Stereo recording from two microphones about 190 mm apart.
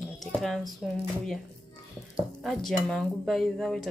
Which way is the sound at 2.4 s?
Centre (ahead or behind).